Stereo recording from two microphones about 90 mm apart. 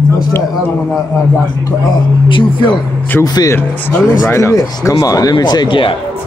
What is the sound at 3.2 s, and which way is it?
Speech, 50° left (ahead or behind).